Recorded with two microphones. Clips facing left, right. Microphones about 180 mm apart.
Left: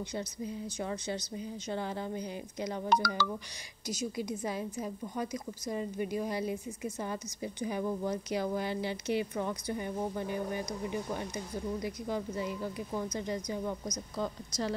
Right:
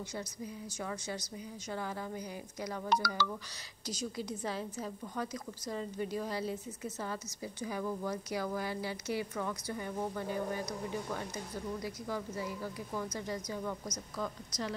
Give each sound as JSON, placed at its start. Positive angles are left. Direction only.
{"t": 0.1, "sound": "a woman's voice", "side_deg": 20}
{"t": 3.8, "sound": "a woman's voice", "side_deg": 10}